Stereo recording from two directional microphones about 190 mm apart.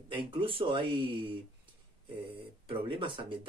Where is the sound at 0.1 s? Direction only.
25° right (ahead or behind).